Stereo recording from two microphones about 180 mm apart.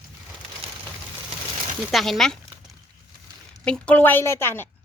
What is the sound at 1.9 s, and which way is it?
Speech, centre (ahead or behind).